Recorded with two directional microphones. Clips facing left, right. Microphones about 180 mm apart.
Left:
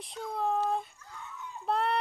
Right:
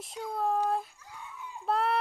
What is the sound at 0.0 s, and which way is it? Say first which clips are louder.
Speech: right 1 dB; 5° right (ahead or behind).